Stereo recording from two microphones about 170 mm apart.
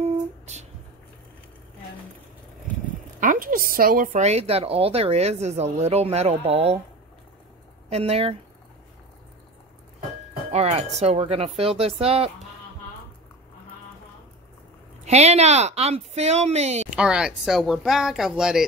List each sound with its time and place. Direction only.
0.0 s a sound: 40° right (ahead or behind)
3.2 s a woman's voice: 55° right (ahead or behind); by 6.8 s 35° right (ahead or behind)
7.9 s a woman's voice: 35° right (ahead or behind)
10.5 s a woman's voice: 40° right (ahead or behind)
15.0 s a woman's voice: 40° right (ahead or behind)
16.9 s speech: 5° right (ahead or behind)